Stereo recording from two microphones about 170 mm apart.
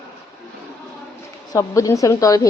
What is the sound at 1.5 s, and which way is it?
Speech, 20° left (ahead or behind).